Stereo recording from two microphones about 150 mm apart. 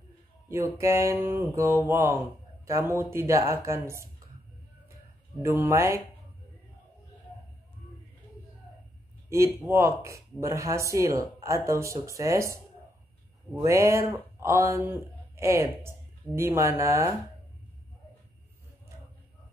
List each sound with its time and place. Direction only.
0.5 s speech: 20° right (ahead or behind)
5.4 s speech: 20° right (ahead or behind)
9.3 s speech: 20° right (ahead or behind)
13.7 s speech: 20° right (ahead or behind)